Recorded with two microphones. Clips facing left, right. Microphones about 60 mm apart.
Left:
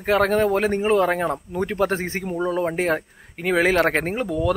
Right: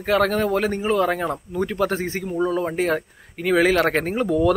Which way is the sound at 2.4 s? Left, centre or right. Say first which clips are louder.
Even; left.